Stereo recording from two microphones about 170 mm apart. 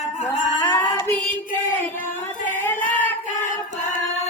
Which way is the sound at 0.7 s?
10° left (ahead or behind).